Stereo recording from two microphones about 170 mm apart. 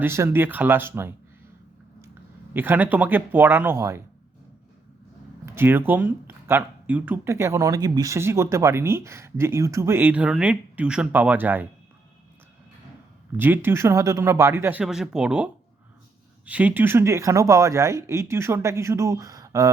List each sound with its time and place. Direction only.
0.0 s speech: 15° right (ahead or behind)
2.5 s speech: 10° right (ahead or behind)
5.5 s speech: 15° right (ahead or behind)
13.3 s speech: 10° right (ahead or behind)
16.5 s speech: 10° right (ahead or behind)